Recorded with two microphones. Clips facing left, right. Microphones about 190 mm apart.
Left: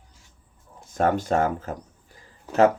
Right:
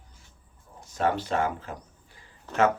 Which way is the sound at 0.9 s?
50° left (ahead or behind).